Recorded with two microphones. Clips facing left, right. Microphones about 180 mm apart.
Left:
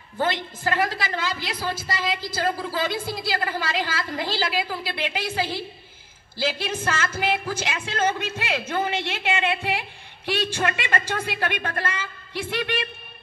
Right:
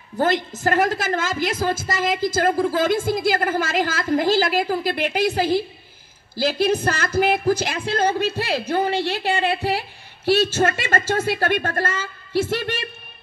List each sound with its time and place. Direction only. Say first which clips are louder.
0.2 s a woman's voice: right 5 dB; 40° right (ahead or behind)